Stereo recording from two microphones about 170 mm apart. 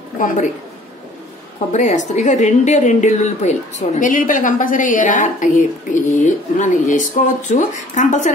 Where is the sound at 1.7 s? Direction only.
45° left (ahead or behind).